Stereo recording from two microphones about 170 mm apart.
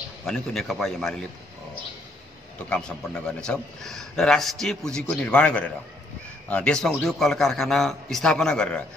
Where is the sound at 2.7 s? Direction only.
5° left (ahead or behind).